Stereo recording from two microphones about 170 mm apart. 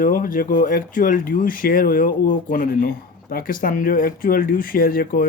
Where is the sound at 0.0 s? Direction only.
55° left (ahead or behind).